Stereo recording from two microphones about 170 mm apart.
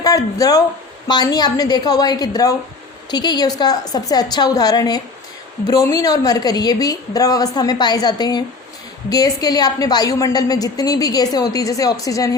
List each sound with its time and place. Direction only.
0.0 s a woman's voice: 20° left (ahead or behind)